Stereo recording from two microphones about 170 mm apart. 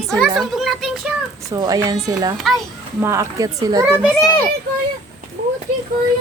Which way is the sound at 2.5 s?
Centre (ahead or behind).